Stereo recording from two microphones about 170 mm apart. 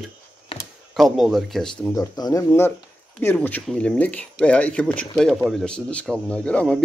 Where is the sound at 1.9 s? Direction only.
20° left (ahead or behind).